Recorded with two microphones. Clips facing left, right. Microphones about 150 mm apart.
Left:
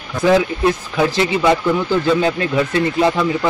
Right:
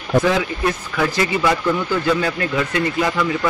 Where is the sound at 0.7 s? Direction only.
25° left (ahead or behind).